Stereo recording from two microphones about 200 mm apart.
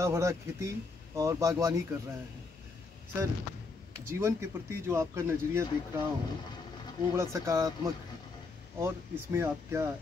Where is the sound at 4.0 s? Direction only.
15° right (ahead or behind).